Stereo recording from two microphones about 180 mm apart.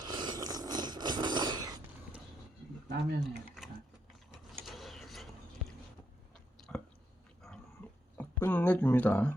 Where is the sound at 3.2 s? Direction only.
Centre (ahead or behind).